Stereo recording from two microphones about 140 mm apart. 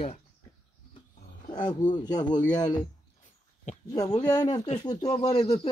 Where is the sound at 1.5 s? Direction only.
30° left (ahead or behind).